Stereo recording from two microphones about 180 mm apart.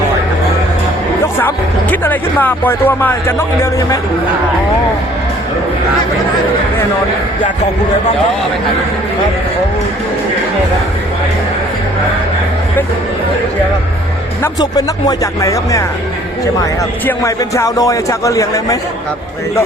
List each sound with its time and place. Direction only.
1.4 s speech: 10° left (ahead or behind)
14.4 s speech: 20° left (ahead or behind)
17.1 s speech: 15° left (ahead or behind)